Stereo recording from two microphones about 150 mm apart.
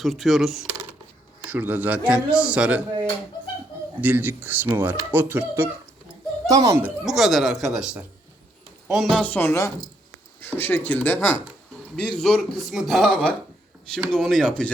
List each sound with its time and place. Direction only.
0.0 s a man's voice: centre (ahead or behind)
4.0 s speech: 10° right (ahead or behind)
7.0 s a man's voice: centre (ahead or behind)